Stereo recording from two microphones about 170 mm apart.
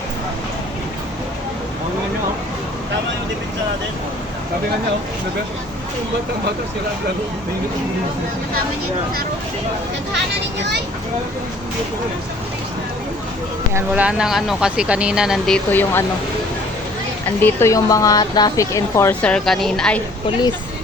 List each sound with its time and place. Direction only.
13.7 s speech: 10° right (ahead or behind); by 16.0 s 10° left (ahead or behind)
17.4 s speech: 15° left (ahead or behind)